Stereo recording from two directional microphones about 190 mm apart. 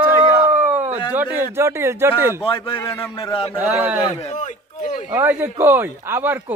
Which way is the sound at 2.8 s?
15° left (ahead or behind).